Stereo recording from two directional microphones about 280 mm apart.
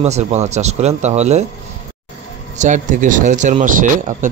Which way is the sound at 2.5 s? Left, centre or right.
Right.